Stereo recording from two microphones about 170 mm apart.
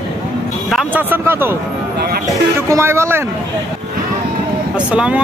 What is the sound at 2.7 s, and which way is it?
Speech, 15° right (ahead or behind).